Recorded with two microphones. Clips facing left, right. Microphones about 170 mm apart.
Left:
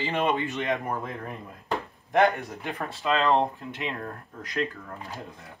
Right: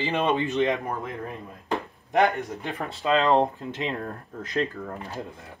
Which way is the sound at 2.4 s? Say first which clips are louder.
Right 2 dB; 20° right (ahead or behind).